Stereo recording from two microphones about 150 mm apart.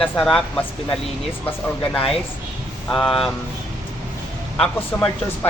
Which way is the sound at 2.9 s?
Centre (ahead or behind).